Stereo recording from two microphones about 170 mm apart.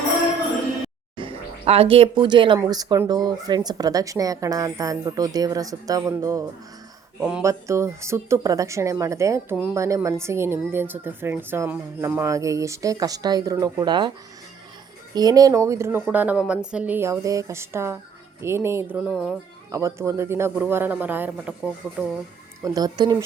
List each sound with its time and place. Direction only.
1.1 s speech: 30° right (ahead or behind)
7.2 s speech: 5° right (ahead or behind)
7.4 s a woman's voice: 15° right (ahead or behind)
15.1 s a woman's voice: 20° right (ahead or behind)
19.1 s speech: centre (ahead or behind)
19.7 s a woman's voice: 20° right (ahead or behind)
22.6 s speech: 20° right (ahead or behind)